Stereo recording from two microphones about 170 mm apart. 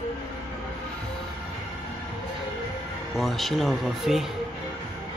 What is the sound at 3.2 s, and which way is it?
Speech, centre (ahead or behind).